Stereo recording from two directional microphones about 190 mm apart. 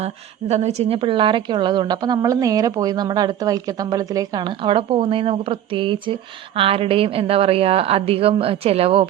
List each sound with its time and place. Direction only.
0.0 s a woman's voice: 35° right (ahead or behind)